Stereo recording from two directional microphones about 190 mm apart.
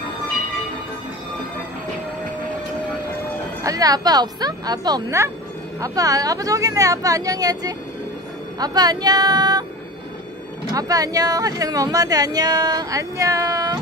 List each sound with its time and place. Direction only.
3.6 s speech: 20° right (ahead or behind)
10.7 s speech: 20° right (ahead or behind)